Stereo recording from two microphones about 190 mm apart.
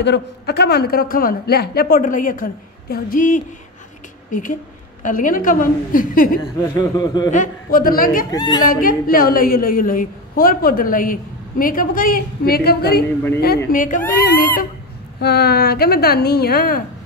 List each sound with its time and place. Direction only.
0.0 s a woman's voice: 60° left (ahead or behind)
6.8 s speech: 20° left (ahead or behind)
7.2 s a woman's voice: 45° left (ahead or behind)
8.3 s speech: 20° left (ahead or behind)
8.6 s a woman's voice: 50° left (ahead or behind)
13.7 s a woman's voice: 45° left (ahead or behind)